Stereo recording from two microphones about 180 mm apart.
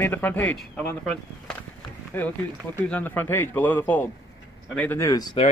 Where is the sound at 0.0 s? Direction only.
10° left (ahead or behind).